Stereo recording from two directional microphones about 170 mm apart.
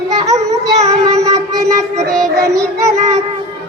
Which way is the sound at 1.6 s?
20° right (ahead or behind).